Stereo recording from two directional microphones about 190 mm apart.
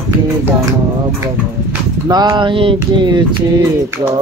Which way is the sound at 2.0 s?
20° right (ahead or behind).